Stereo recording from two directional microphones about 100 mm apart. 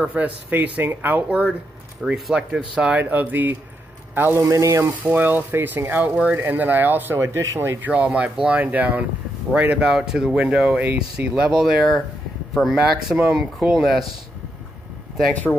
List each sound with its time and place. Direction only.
0.0 s speech: 15° right (ahead or behind)
2.1 s speech: 5° right (ahead or behind); by 4.9 s 30° right (ahead or behind)
5.0 s speech: 20° right (ahead or behind)
7.8 s speech: 15° right (ahead or behind)